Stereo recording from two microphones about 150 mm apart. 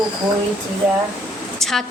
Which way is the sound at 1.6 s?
Centre (ahead or behind).